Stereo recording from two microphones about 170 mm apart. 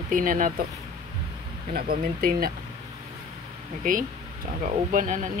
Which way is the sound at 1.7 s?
60° right (ahead or behind).